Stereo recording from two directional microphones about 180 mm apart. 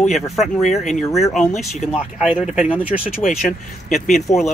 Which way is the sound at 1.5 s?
40° left (ahead or behind).